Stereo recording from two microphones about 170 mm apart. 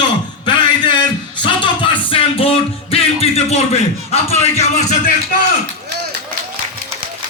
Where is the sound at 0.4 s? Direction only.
25° left (ahead or behind).